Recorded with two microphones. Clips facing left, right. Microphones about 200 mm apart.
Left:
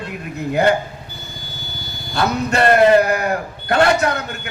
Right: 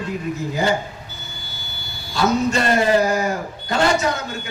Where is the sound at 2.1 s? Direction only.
60° left (ahead or behind).